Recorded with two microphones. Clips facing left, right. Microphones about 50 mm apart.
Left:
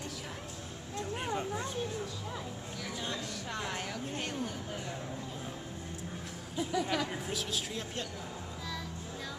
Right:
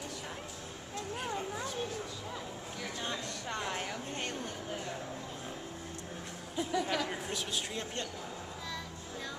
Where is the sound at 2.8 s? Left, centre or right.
Centre.